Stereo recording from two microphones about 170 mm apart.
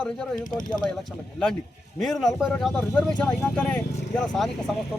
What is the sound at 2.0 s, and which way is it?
Speech, centre (ahead or behind).